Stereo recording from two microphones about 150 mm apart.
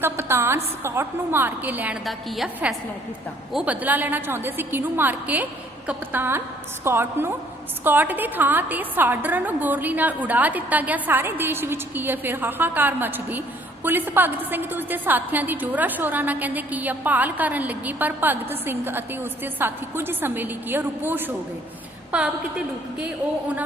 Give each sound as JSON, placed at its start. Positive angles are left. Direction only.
{"t": 0.0, "sound": "a woman's voice", "side_deg": -15}
{"t": 2.0, "sound": "a woman's voice", "side_deg": 0}
{"t": 3.5, "sound": "a woman's voice", "side_deg": -10}